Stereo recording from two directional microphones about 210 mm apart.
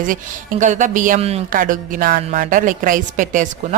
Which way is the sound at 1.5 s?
40° right (ahead or behind).